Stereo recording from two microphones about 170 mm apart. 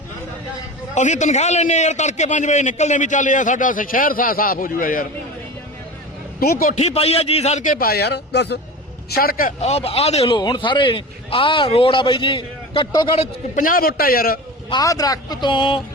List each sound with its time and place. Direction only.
0.9 s a man's voice: 45° left (ahead or behind)
6.4 s a man's voice: 60° left (ahead or behind)
6.7 s a man's voice: 40° left (ahead or behind); by 8.5 s 80° left
9.0 s a man's voice: 65° left (ahead or behind)
9.6 s a man's voice: 40° left (ahead or behind)
13.6 s a man's voice: 55° left (ahead or behind)
14.7 s a man's voice: 20° left (ahead or behind)